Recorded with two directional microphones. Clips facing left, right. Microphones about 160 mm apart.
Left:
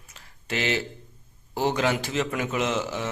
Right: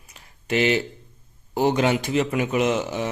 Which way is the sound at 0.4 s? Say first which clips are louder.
Right 6 dB; 15° right (ahead or behind).